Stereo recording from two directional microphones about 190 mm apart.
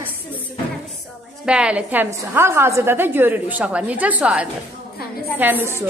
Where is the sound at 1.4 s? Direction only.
5° right (ahead or behind).